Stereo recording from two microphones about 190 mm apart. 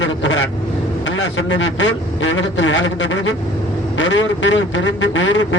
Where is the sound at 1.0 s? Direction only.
75° left (ahead or behind).